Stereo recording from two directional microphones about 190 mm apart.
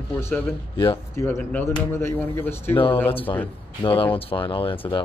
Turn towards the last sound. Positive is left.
turn(degrees=25)  # may be behind; listen again after turning